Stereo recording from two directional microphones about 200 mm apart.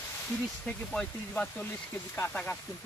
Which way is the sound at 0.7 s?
5° left (ahead or behind).